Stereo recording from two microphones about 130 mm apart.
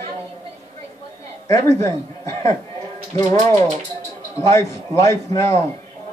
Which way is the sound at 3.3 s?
70° right (ahead or behind).